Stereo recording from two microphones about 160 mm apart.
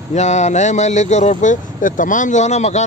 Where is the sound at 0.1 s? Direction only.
45° left (ahead or behind).